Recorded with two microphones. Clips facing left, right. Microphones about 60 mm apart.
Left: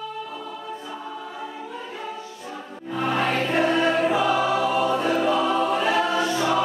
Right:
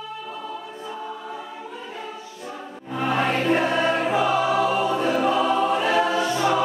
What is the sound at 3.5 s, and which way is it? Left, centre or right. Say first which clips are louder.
Choir: left 2 dB; centre.